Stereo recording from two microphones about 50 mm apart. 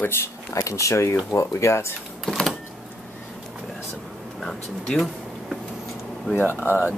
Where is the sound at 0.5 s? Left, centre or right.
Left.